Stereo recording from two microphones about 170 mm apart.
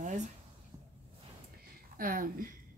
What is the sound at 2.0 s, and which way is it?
Speech, 55° right (ahead or behind).